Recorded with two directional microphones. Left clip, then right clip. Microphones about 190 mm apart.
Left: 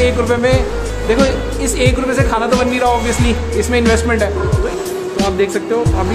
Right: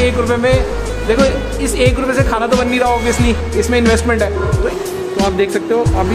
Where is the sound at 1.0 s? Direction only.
Centre (ahead or behind).